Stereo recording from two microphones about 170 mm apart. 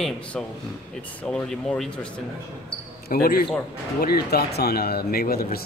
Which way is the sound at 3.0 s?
60° left (ahead or behind).